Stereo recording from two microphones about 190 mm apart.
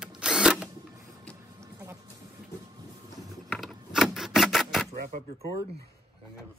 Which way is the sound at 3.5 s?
Centre (ahead or behind).